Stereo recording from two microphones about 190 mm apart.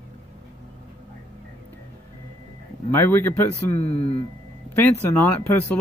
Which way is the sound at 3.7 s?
30° left (ahead or behind).